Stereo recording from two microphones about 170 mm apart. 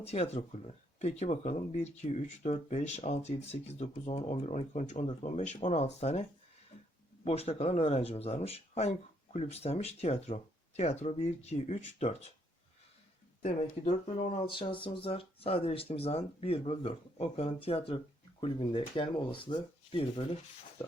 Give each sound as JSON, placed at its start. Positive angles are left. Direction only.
{"t": 0.0, "sound": "speech", "side_deg": 40}
{"t": 7.3, "sound": "speech", "side_deg": 35}
{"t": 13.4, "sound": "speech", "side_deg": 45}
{"t": 14.5, "sound": "speech", "side_deg": 30}